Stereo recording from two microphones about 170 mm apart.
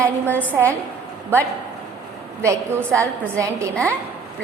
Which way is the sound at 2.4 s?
15° right (ahead or behind).